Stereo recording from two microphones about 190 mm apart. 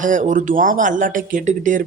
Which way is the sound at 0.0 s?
40° right (ahead or behind).